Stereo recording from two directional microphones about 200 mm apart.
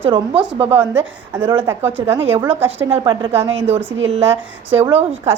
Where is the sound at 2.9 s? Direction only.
25° right (ahead or behind).